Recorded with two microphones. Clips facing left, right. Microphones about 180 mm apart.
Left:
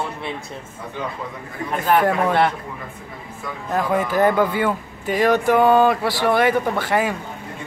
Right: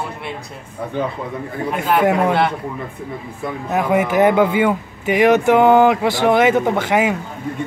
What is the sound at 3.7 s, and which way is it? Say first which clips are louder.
Speech: right 3 dB; 15° right (ahead or behind).